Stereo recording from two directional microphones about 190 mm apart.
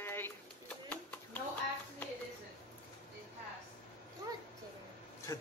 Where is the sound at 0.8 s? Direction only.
10° left (ahead or behind).